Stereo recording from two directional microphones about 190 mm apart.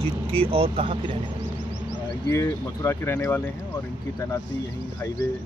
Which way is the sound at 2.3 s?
15° left (ahead or behind).